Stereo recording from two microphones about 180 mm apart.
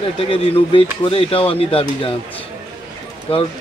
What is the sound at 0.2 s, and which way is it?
Speech, 30° left (ahead or behind).